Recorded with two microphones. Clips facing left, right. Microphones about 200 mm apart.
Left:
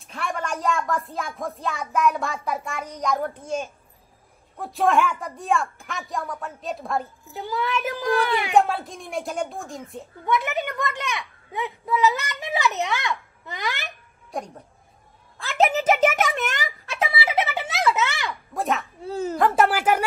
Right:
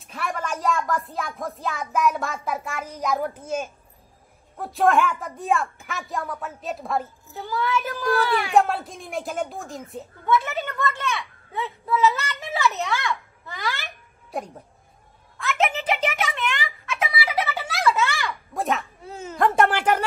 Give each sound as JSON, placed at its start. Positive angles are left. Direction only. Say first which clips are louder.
{"t": 0.1, "sound": "speech", "louder": "even", "side_deg": 0}
{"t": 7.3, "sound": "a woman's voice", "louder": "right 1 dB", "side_deg": 15}
{"t": 8.5, "sound": "speech", "louder": "left 1 dB", "side_deg": 0}
{"t": 10.2, "sound": "a woman's voice", "louder": "right 1 dB", "side_deg": 15}
{"t": 15.3, "sound": "a sound", "louder": "left 3 dB", "side_deg": 35}
{"t": 18.5, "sound": "speech", "louder": "even", "side_deg": 0}
{"t": 19.0, "sound": "a woman's voice", "louder": "left 12 dB", "side_deg": 35}
{"t": 19.3, "sound": "speech", "louder": "right 1 dB", "side_deg": 0}